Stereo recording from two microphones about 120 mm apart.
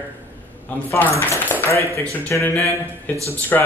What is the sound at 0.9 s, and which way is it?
Speech, 15° left (ahead or behind).